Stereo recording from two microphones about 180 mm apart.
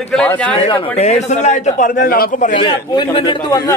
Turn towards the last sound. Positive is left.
turn(degrees=20)  # may be behind; listen again after turning